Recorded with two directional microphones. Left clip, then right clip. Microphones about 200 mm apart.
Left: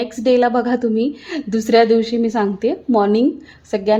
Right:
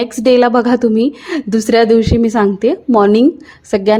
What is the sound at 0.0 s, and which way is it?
A woman's voice, 25° right (ahead or behind).